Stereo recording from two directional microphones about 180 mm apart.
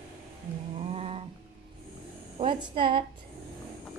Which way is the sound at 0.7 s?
35° right (ahead or behind).